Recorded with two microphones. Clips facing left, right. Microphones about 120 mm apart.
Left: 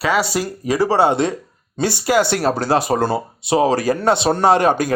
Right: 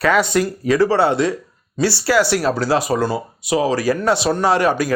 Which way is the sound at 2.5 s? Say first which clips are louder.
Left 1 dB; 55° left (ahead or behind).